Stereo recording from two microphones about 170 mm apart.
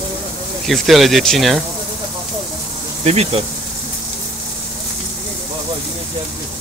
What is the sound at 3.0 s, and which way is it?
Speech, 40° right (ahead or behind).